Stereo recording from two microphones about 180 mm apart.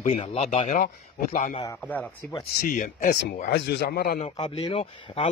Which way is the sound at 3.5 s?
70° left (ahead or behind).